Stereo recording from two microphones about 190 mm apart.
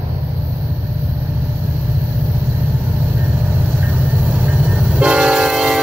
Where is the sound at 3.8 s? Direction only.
10° right (ahead or behind).